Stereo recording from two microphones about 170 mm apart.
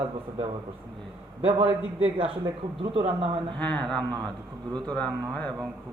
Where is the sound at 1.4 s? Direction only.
35° right (ahead or behind).